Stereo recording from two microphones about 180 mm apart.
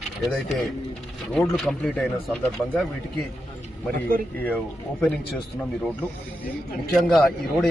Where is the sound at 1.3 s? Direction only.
Centre (ahead or behind).